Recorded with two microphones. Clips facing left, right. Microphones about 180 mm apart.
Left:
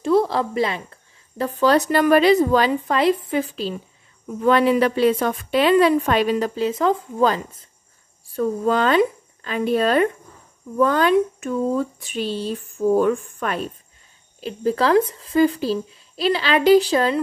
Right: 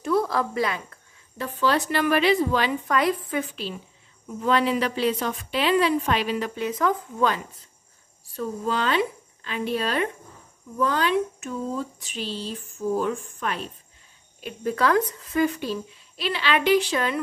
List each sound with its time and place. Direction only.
0.0 s a woman's voice: 25° left (ahead or behind)
1.4 s a woman's voice: 40° left (ahead or behind)
4.5 s a woman's voice: 55° left (ahead or behind); by 7.4 s 35° left (ahead or behind)
8.4 s a woman's voice: 50° left (ahead or behind)
14.4 s a woman's voice: 30° left (ahead or behind)